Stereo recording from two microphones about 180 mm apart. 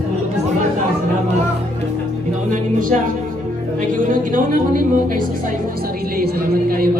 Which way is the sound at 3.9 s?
50° right (ahead or behind).